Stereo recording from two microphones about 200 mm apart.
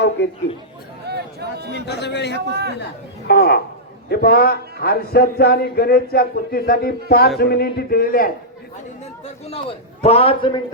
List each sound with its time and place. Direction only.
0.2 s a man's voice: 60° left (ahead or behind)
1.0 s a sound: 55° right (ahead or behind)
1.9 s a man's voice: 55° left (ahead or behind)
2.5 s speech: 55° right (ahead or behind)
2.7 s speech: 55° left (ahead or behind)
9.2 s a man's voice: 30° left (ahead or behind)